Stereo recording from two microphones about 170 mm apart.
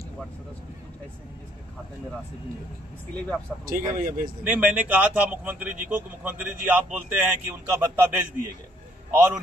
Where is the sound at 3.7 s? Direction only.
50° right (ahead or behind).